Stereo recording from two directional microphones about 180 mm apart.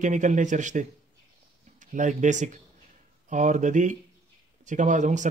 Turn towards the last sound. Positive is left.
turn(degrees=-45)  # may be behind; listen again after turning